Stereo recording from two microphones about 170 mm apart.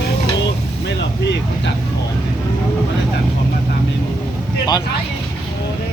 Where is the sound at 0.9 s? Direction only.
90° left.